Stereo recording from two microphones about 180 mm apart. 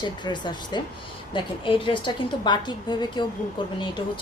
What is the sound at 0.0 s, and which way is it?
A woman's voice, 25° left (ahead or behind).